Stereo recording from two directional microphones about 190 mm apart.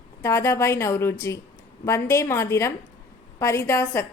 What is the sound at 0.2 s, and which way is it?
A woman's voice, 15° left (ahead or behind).